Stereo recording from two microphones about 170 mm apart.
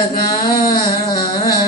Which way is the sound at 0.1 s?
60° left (ahead or behind).